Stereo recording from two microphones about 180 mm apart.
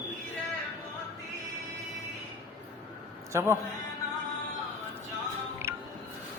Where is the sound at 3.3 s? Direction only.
15° right (ahead or behind).